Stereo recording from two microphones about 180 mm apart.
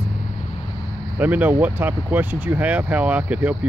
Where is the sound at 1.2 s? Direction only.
10° right (ahead or behind).